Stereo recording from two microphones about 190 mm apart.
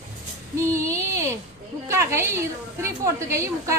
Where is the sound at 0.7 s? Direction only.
15° right (ahead or behind).